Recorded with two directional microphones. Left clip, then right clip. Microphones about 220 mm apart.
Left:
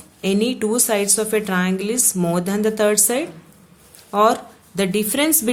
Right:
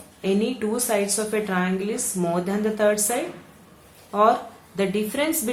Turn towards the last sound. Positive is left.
turn(degrees=45)  # may be behind; listen again after turning